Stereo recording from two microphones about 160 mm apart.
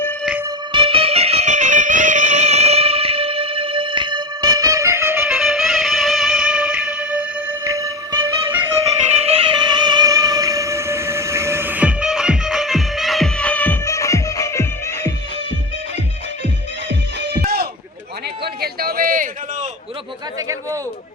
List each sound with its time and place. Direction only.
0.7 s music: 30° right (ahead or behind); by 5.3 s 15° right (ahead or behind)
5.3 s music: centre (ahead or behind); by 8.3 s 20° right (ahead or behind)
9.1 s music: 40° right (ahead or behind); by 15.1 s 20° left (ahead or behind)
16.9 s music: 90° right
18.4 s a sound: 75° right (ahead or behind); by 19.3 s 60° right (ahead or behind)